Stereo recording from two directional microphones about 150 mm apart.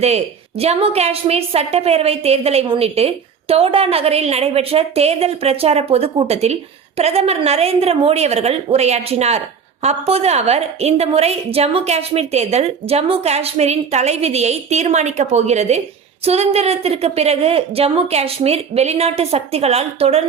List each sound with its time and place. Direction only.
0.0 s a woman's voice: 45° right (ahead or behind)